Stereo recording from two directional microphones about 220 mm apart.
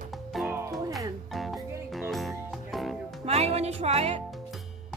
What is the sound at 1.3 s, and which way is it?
Music, centre (ahead or behind).